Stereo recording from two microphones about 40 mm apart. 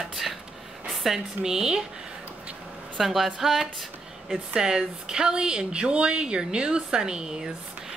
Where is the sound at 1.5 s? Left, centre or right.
Centre.